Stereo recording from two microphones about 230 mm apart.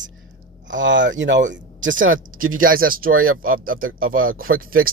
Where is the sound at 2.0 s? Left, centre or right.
Right.